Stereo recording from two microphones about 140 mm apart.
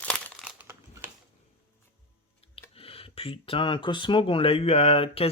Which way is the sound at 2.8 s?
40° left (ahead or behind).